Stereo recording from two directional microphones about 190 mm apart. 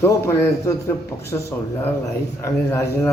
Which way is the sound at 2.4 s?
15° left (ahead or behind).